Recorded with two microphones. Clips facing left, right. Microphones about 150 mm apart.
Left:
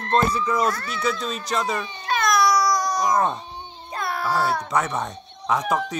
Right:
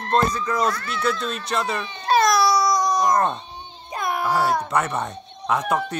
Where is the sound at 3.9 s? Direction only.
15° right (ahead or behind).